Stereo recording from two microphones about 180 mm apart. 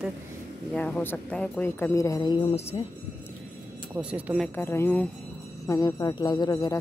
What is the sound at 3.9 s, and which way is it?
Speech, 5° right (ahead or behind).